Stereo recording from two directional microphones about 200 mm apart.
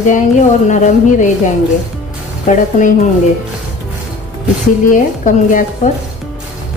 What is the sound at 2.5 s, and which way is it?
Speech, 40° left (ahead or behind).